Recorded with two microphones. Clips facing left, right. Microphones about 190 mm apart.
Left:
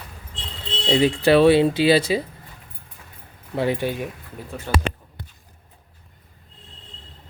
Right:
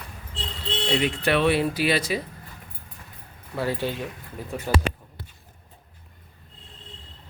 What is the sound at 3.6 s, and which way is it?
Speech, 20° left (ahead or behind).